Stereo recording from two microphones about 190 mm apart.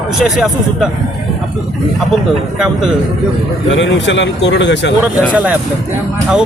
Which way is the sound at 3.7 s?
75° left (ahead or behind).